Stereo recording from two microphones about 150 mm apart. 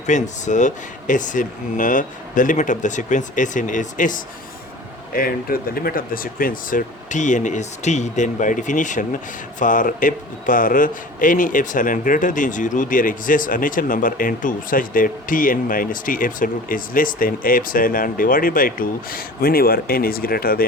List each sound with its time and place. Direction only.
0.0 s a man's voice: 50° left (ahead or behind)
5.1 s a man's voice: 75° left (ahead or behind)